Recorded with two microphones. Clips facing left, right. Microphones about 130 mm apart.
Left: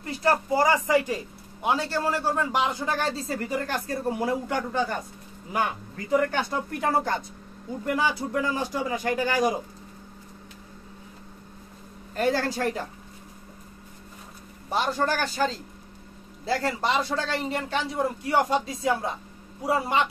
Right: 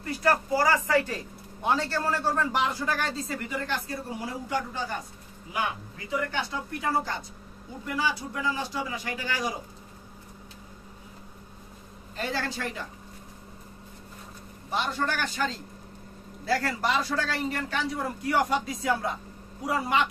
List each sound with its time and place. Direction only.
0.0 s speech: 25° left (ahead or behind); by 4.9 s 55° left (ahead or behind)
5.5 s a man's voice: 45° left (ahead or behind)
12.2 s speech: 45° left (ahead or behind)
14.7 s speech: 40° left (ahead or behind)
16.4 s speech: 25° left (ahead or behind)